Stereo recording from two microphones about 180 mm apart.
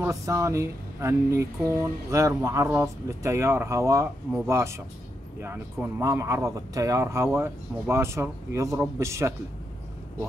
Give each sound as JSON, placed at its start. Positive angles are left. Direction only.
{"t": 0.0, "sound": "speech", "side_deg": -15}